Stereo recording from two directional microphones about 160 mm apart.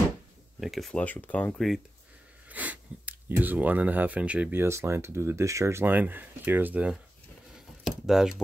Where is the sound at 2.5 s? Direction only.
10° right (ahead or behind).